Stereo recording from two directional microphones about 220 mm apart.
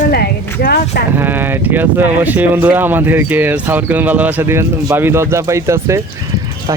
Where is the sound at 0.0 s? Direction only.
40° left (ahead or behind).